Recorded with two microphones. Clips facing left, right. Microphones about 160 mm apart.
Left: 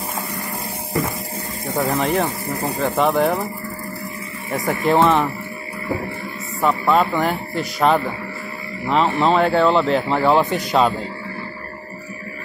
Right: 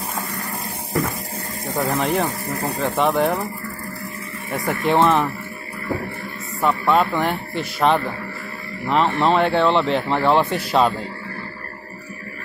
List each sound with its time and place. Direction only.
1.8 s speech: centre (ahead or behind)
4.5 s speech: 5° left (ahead or behind)
6.6 s speech: centre (ahead or behind)